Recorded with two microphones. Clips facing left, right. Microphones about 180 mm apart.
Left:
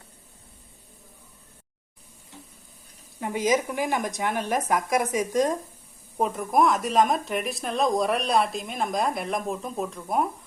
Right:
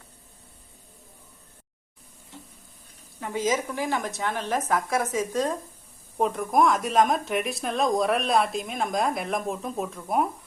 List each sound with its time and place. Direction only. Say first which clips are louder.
3.2 s speech: left 2 dB; 15° left (ahead or behind)
6.1 s speech: even; 5° left (ahead or behind)